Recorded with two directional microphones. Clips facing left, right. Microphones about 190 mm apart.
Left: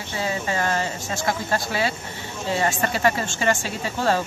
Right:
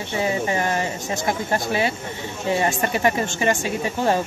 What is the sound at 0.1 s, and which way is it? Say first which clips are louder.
Speech: right 3 dB; 20° right (ahead or behind).